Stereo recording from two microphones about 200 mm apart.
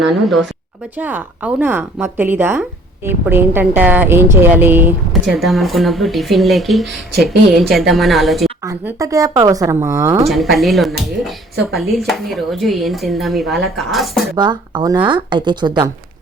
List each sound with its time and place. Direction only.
0.9 s a woman's voice: 10° right (ahead or behind)
8.6 s a woman's voice: 15° right (ahead or behind)
10.2 s speech: centre (ahead or behind)
14.3 s speech: 20° right (ahead or behind)